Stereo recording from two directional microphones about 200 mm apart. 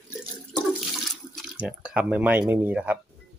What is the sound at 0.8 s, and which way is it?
Water, centre (ahead or behind).